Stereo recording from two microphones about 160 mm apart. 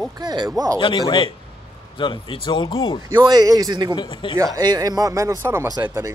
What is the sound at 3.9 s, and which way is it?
Speech, 30° left (ahead or behind).